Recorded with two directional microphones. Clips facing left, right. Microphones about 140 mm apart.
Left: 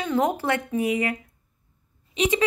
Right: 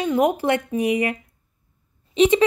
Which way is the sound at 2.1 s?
25° right (ahead or behind).